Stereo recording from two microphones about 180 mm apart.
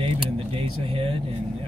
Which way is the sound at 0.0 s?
30° right (ahead or behind).